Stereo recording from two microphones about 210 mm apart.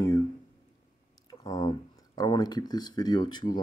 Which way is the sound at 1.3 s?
20° left (ahead or behind).